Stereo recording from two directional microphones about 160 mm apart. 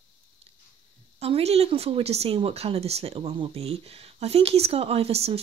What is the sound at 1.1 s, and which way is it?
Speech, 40° right (ahead or behind).